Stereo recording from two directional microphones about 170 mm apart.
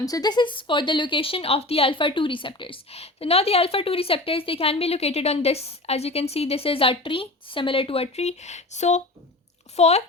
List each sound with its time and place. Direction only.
0.0 s a woman's voice: 20° left (ahead or behind); by 10.0 s 40° left (ahead or behind)